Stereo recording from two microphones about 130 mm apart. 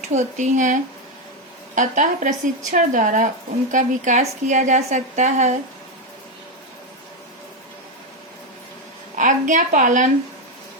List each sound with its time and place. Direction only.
0.1 s a woman's voice: 65° right (ahead or behind)
9.1 s a woman's voice: 85° right